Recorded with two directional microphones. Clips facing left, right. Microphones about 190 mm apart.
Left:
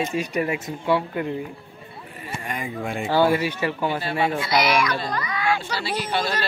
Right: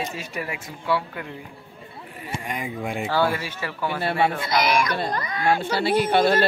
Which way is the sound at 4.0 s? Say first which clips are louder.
Right 1 dB; 55° right (ahead or behind).